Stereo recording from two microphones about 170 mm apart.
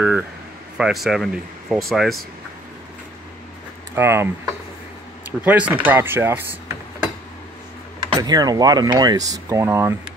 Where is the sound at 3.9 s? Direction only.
15° right (ahead or behind).